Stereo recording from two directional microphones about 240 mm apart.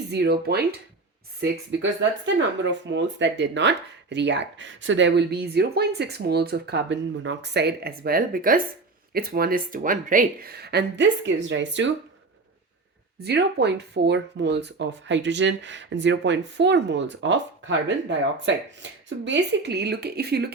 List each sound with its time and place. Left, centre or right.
0.1 s speech: right
13.1 s speech: right